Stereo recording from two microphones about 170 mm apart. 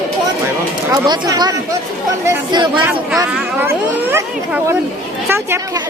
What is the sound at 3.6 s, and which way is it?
A woman's voice, 10° right (ahead or behind).